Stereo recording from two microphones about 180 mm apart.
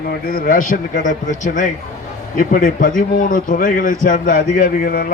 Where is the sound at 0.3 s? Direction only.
55° left (ahead or behind).